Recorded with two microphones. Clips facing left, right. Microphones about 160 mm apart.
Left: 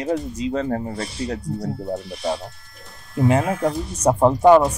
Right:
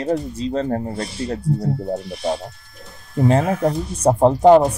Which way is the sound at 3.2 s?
30° right (ahead or behind).